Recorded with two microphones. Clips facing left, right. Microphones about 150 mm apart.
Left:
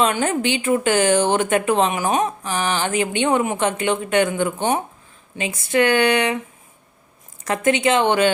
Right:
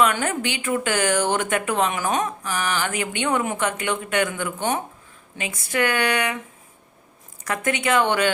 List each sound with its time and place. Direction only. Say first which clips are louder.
0.0 s speech: left 2 dB; 25° left (ahead or behind)
7.4 s speech: left 5 dB; 25° left (ahead or behind)